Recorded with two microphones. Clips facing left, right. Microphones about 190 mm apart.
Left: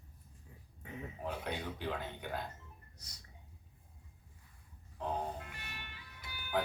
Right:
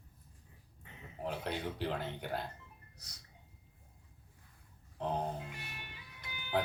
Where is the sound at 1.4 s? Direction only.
30° right (ahead or behind).